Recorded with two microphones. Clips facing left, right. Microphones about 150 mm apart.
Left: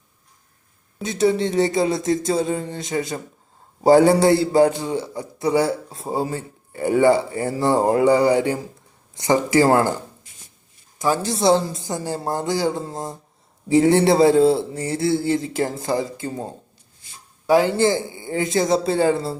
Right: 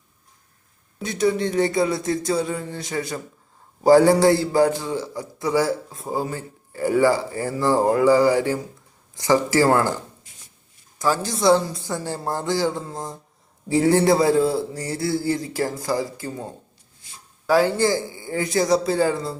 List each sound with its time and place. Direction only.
1.0 s a man's voice: 25° left (ahead or behind)
10.9 s a man's voice: 20° left (ahead or behind)